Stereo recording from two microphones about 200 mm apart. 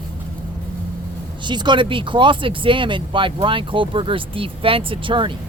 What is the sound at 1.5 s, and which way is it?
Speech, 20° right (ahead or behind).